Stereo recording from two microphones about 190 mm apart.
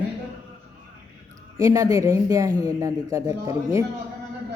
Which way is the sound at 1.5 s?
15° right (ahead or behind).